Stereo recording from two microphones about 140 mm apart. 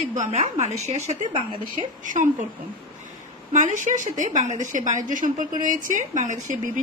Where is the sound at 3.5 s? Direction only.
60° right (ahead or behind).